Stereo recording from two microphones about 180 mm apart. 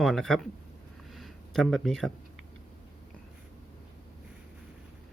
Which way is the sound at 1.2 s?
Centre (ahead or behind).